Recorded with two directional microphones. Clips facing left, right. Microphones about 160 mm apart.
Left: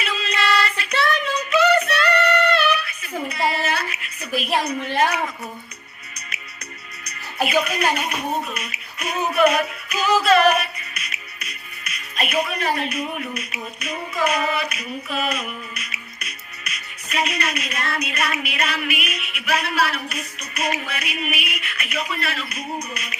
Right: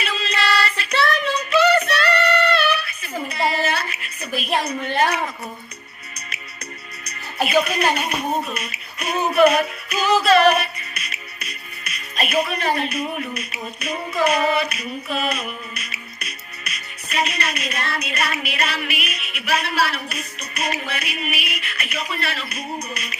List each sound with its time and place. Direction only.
0.0 s a sound: 30° right (ahead or behind)
4.6 s speech: 30° right (ahead or behind)
7.4 s speech: 30° right (ahead or behind)